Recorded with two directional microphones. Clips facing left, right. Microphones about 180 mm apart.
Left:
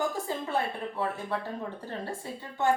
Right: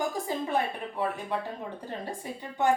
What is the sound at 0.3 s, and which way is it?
A woman's voice, 15° right (ahead or behind).